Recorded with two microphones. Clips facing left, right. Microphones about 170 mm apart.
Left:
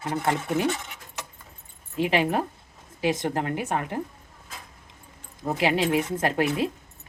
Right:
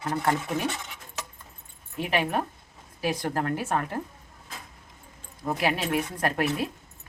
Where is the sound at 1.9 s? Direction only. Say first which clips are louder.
Left 3 dB; 30° left (ahead or behind).